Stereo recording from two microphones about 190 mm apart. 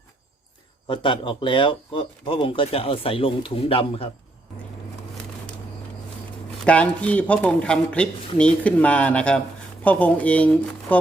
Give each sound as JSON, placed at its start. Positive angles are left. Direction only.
{"t": 0.9, "sound": "speech", "side_deg": 25}
{"t": 6.7, "sound": "speech", "side_deg": 5}